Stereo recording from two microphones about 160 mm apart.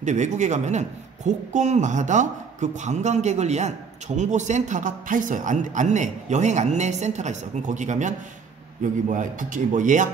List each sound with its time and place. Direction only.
0.0 s speech: 50° right (ahead or behind)
9.1 s speech: 55° right (ahead or behind)